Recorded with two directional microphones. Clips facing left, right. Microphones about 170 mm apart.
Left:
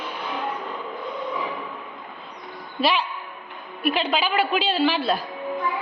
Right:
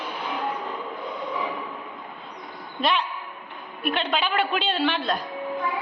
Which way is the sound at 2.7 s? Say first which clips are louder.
Left 2 dB; 5° left (ahead or behind).